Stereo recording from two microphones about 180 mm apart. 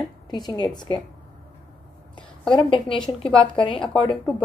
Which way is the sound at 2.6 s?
30° left (ahead or behind).